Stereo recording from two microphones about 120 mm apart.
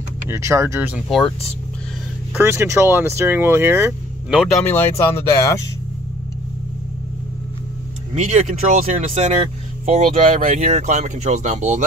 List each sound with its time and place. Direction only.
0.3 s speech: 25° right (ahead or behind)
1.0 s speech: centre (ahead or behind)
2.3 s speech: 20° right (ahead or behind)
4.6 s speech: 20° left (ahead or behind)
8.1 s speech: 70° right (ahead or behind)